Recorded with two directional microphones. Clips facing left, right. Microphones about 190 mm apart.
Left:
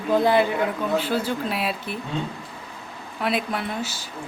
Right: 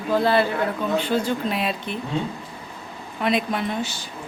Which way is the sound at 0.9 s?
5° left (ahead or behind).